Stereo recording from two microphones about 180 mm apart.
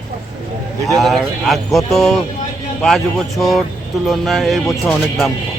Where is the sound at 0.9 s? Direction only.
Centre (ahead or behind).